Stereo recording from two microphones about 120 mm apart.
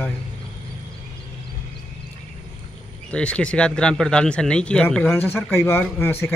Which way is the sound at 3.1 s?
10° left (ahead or behind).